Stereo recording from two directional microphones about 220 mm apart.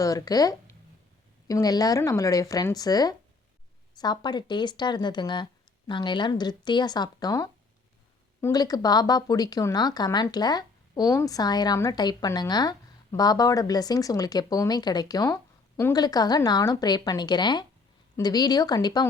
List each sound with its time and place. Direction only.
0.0 s speech: 15° left (ahead or behind)